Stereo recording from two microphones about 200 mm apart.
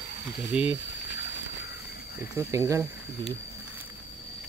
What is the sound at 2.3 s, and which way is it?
Speech, 15° right (ahead or behind).